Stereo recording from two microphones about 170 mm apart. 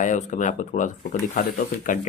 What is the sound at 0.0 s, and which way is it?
Speech, 50° left (ahead or behind).